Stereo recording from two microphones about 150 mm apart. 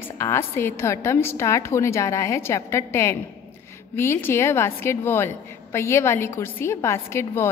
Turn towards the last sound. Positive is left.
turn(degrees=15)  # may be behind; listen again after turning